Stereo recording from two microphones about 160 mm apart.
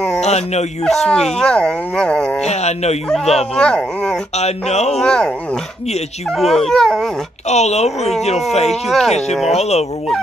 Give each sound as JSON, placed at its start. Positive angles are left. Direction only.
{"t": 0.2, "sound": "speech", "side_deg": 45}
{"t": 0.8, "sound": "speech", "side_deg": 5}
{"t": 2.4, "sound": "speech", "side_deg": 45}
{"t": 3.5, "sound": "speech", "side_deg": 5}
{"t": 4.4, "sound": "speech", "side_deg": 45}
{"t": 4.9, "sound": "speech", "side_deg": 5}
{"t": 7.4, "sound": "speech", "side_deg": 45}
{"t": 8.6, "sound": "speech", "side_deg": 0}
{"t": 9.6, "sound": "speech", "side_deg": 40}